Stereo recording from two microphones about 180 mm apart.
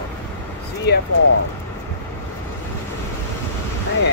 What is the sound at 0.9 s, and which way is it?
Speech, 65° left (ahead or behind).